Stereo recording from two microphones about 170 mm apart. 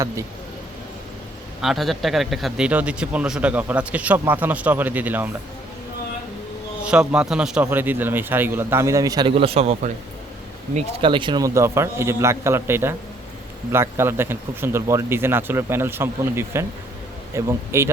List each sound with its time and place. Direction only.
1.6 s a man's voice: centre (ahead or behind)
6.8 s a man's voice: 5° right (ahead or behind)